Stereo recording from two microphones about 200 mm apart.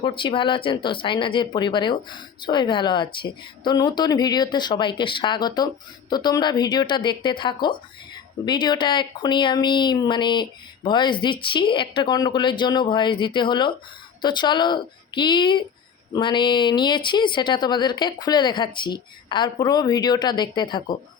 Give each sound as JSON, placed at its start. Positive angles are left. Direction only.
{"t": 0.0, "sound": "speech", "side_deg": 25}